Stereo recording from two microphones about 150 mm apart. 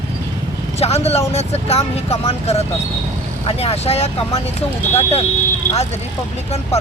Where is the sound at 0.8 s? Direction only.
45° left (ahead or behind).